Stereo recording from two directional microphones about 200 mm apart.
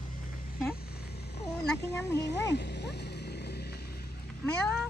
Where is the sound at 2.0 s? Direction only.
60° left (ahead or behind).